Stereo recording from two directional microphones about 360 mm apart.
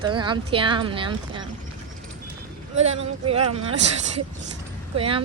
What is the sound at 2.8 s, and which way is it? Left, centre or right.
Speech, centre.